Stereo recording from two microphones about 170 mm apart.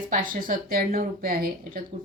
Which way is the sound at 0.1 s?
55° right (ahead or behind).